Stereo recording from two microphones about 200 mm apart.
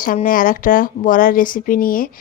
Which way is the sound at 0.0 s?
45° left (ahead or behind).